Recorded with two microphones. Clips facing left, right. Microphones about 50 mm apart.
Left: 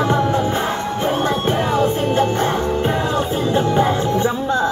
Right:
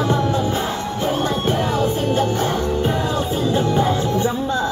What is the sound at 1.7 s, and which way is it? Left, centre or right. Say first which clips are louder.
Music: left 2 dB; left.